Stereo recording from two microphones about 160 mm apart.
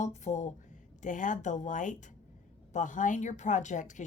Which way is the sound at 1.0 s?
50° left (ahead or behind).